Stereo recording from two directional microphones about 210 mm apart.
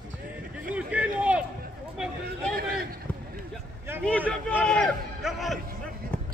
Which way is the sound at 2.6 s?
45° right (ahead or behind).